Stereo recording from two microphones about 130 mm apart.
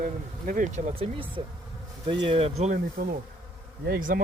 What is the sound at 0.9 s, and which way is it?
Speech, 45° right (ahead or behind).